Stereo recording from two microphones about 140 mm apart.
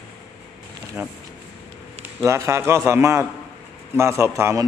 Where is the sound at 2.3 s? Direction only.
20° right (ahead or behind).